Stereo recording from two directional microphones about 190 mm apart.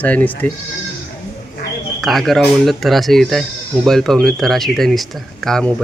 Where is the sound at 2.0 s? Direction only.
Centre (ahead or behind).